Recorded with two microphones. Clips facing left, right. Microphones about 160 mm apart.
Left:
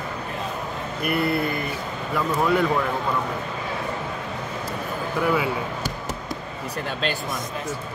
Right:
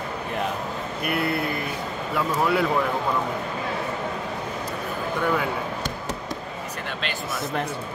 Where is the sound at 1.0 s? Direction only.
Centre (ahead or behind).